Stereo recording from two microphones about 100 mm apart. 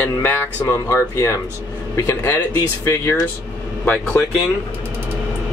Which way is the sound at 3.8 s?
15° left (ahead or behind).